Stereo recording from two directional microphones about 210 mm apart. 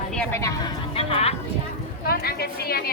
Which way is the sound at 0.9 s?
30° left (ahead or behind).